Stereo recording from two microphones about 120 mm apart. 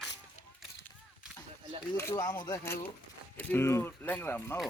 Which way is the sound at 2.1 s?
30° left (ahead or behind).